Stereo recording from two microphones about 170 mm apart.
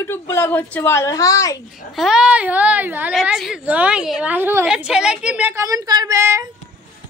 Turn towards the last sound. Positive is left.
turn(degrees=-15)  # may be behind; listen again after turning